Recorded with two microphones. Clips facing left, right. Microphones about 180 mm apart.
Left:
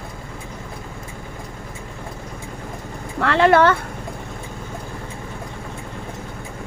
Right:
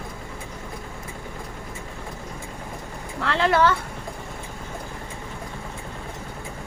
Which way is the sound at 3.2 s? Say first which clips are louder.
Left 6 dB; 60° left (ahead or behind).